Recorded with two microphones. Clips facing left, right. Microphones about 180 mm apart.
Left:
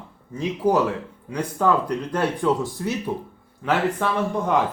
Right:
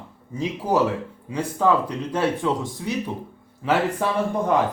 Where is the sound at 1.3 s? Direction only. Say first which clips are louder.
Right 1 dB; 5° right (ahead or behind).